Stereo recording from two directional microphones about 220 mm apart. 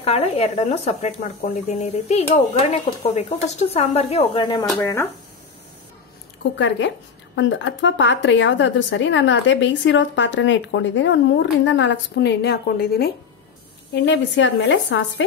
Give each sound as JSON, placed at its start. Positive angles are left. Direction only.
{"t": 0.0, "sound": "speech", "side_deg": 30}
{"t": 7.3, "sound": "speech", "side_deg": 55}
{"t": 14.0, "sound": "speech", "side_deg": 55}